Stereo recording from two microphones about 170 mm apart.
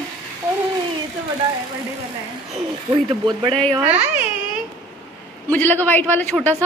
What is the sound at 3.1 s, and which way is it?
Speech, 30° right (ahead or behind).